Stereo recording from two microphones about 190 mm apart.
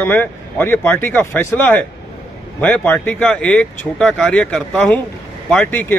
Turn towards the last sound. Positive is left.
turn(degrees=10)  # may be behind; listen again after turning